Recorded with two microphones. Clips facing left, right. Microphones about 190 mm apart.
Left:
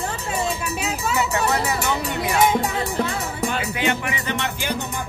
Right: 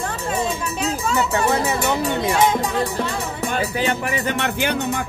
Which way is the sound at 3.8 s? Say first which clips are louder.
Right 2 dB; 40° right (ahead or behind).